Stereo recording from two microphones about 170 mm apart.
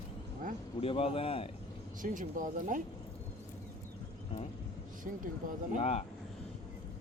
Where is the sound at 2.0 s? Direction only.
50° right (ahead or behind).